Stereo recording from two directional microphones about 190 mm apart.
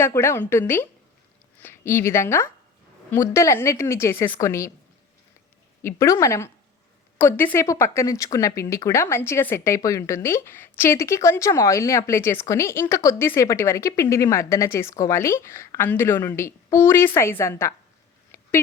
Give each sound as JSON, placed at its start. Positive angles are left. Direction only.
{"t": 0.0, "sound": "speech", "side_deg": 15}
{"t": 5.8, "sound": "speech", "side_deg": 15}
{"t": 18.3, "sound": "a sound", "side_deg": 15}